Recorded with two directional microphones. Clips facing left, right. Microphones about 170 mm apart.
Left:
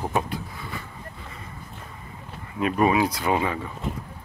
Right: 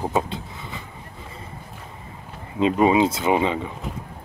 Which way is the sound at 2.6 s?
20° right (ahead or behind).